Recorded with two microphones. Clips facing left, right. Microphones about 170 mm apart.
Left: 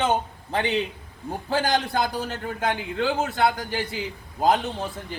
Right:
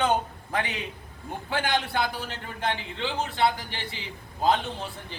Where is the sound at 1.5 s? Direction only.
40° left (ahead or behind).